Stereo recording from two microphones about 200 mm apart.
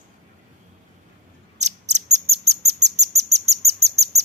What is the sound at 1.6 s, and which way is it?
Bird, 35° right (ahead or behind).